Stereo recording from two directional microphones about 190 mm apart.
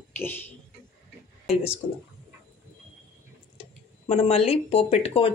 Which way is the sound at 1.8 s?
25° left (ahead or behind).